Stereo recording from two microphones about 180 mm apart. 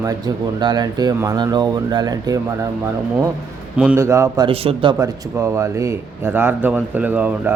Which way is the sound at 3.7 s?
5° right (ahead or behind).